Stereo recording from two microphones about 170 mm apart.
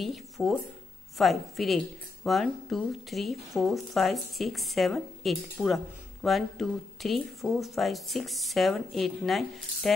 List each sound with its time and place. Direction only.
0.0 s speech: centre (ahead or behind)